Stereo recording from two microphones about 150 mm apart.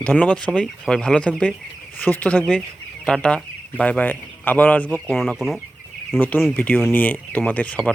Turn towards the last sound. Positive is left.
turn(degrees=10)  # may be behind; listen again after turning